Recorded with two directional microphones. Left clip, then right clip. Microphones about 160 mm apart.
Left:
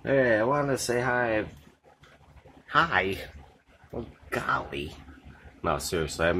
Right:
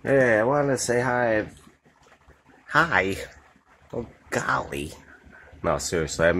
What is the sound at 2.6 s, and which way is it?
Speech, 45° right (ahead or behind).